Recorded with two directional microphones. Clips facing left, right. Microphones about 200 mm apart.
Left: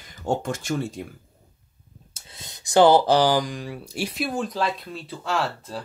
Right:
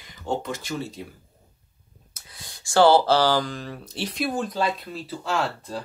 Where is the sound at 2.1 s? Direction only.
25° left (ahead or behind); by 5.8 s centre (ahead or behind).